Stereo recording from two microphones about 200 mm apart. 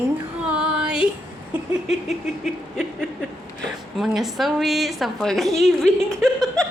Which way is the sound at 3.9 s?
Centre (ahead or behind).